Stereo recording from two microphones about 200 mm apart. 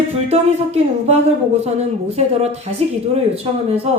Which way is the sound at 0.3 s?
30° right (ahead or behind).